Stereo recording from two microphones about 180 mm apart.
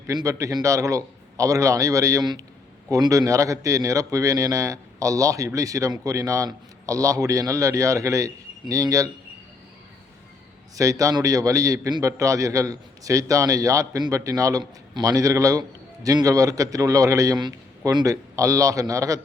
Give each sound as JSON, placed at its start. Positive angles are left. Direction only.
{"t": 0.1, "sound": "a man's voice", "side_deg": -20}
{"t": 10.8, "sound": "a man's voice", "side_deg": -20}